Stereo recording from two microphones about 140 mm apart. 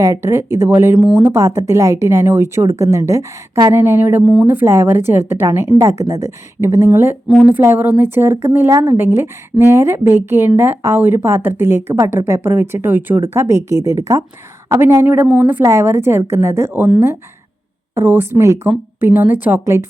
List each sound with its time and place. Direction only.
0.0 s a woman's voice: 20° right (ahead or behind)
17.9 s a woman's voice: 15° right (ahead or behind)